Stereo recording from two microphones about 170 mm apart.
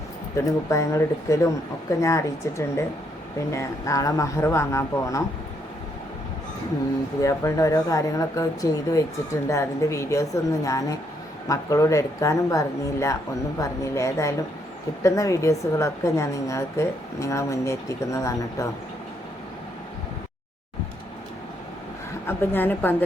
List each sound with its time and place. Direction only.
0.3 s a woman's voice: 20° left (ahead or behind)
7.2 s a woman's voice: 20° left (ahead or behind)
22.3 s a woman's voice: 15° left (ahead or behind)